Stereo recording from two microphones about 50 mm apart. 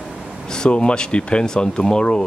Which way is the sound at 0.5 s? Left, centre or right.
Centre.